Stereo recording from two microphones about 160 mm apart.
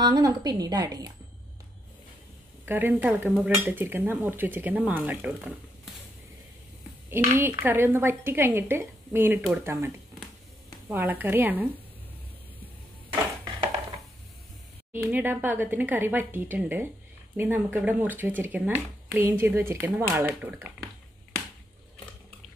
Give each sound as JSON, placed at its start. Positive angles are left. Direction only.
{"t": 0.0, "sound": "a woman's voice", "side_deg": -25}
{"t": 2.6, "sound": "dishes", "side_deg": -10}
{"t": 7.1, "sound": "dishes", "side_deg": -15}
{"t": 14.9, "sound": "dishes", "side_deg": -10}